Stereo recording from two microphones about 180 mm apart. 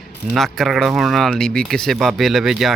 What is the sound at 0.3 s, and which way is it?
Speech, centre (ahead or behind).